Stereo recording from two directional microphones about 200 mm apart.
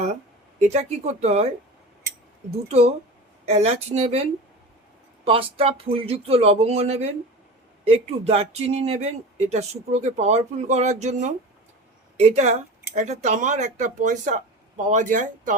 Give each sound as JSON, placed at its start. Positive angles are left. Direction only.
{"t": 0.6, "sound": "speech", "side_deg": -35}